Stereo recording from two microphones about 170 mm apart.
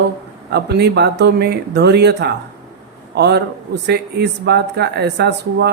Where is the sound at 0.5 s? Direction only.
80° right.